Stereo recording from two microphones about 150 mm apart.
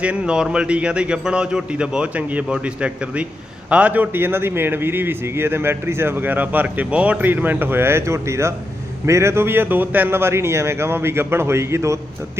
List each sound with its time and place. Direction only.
0.0 s a man's voice: 5° right (ahead or behind)